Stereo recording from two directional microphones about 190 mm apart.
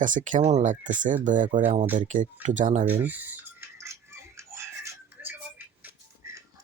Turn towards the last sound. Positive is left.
turn(degrees=-15)  # may be behind; listen again after turning